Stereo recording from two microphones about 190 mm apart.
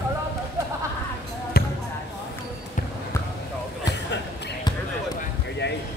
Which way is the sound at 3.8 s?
65° left (ahead or behind).